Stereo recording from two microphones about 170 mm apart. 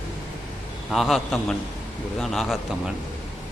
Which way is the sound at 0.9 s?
Centre (ahead or behind).